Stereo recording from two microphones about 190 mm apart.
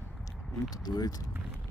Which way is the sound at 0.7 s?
20° left (ahead or behind).